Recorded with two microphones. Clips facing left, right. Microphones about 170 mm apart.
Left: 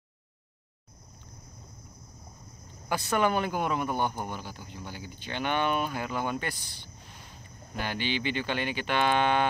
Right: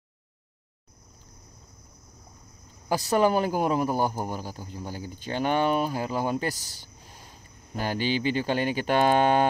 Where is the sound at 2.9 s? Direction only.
35° right (ahead or behind).